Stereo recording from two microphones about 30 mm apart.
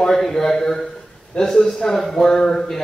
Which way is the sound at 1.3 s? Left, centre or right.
Left.